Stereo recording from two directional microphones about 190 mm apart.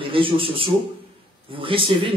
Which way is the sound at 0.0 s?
30° right (ahead or behind).